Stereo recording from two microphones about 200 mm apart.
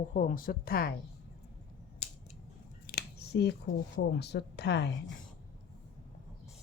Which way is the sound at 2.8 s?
55° left (ahead or behind).